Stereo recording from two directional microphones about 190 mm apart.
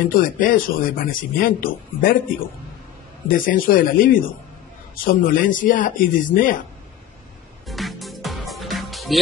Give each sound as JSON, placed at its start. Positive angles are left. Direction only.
{"t": 0.2, "sound": "speech", "side_deg": 45}
{"t": 3.3, "sound": "speech", "side_deg": 45}
{"t": 7.6, "sound": "music", "side_deg": 0}